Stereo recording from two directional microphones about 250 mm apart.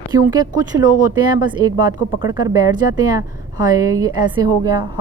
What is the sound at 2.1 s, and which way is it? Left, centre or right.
Speech, centre.